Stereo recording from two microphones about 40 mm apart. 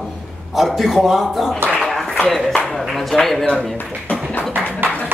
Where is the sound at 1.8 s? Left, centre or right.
Centre.